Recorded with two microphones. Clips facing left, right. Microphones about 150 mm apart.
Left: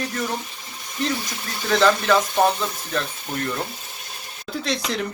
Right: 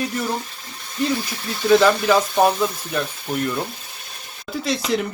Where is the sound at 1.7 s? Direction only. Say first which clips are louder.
Right 3 dB; 10° right (ahead or behind).